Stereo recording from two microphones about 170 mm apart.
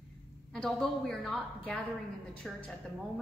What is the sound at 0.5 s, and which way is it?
A woman's voice, 5° left (ahead or behind).